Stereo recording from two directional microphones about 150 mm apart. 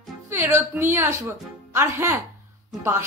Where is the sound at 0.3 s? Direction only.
15° right (ahead or behind).